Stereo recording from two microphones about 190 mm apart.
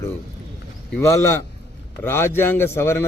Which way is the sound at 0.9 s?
15° left (ahead or behind).